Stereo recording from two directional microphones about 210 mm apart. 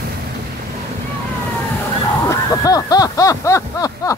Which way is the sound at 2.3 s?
15° left (ahead or behind).